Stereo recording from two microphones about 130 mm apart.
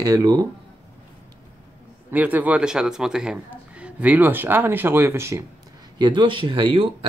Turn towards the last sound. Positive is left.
turn(degrees=-40)  # may be behind; listen again after turning